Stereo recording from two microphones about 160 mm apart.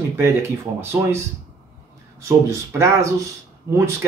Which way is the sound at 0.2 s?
15° right (ahead or behind).